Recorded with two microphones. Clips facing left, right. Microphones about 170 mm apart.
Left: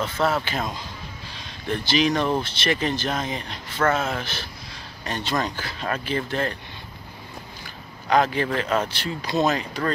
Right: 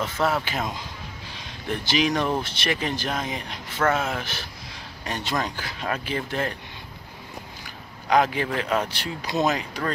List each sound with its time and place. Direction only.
0.0 s speech: 5° right (ahead or behind)
8.1 s speech: 10° right (ahead or behind)